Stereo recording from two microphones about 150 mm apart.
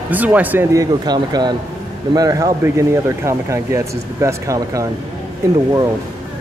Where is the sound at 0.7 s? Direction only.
25° right (ahead or behind).